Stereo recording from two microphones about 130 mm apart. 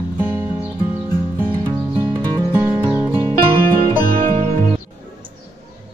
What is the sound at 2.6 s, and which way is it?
Music, 20° right (ahead or behind).